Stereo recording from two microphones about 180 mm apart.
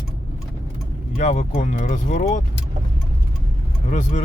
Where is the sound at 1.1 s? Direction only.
40° left (ahead or behind).